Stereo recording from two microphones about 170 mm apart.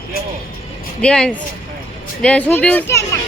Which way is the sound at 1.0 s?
5° left (ahead or behind).